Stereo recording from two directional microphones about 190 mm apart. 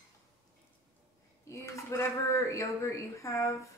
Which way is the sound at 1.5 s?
15° left (ahead or behind).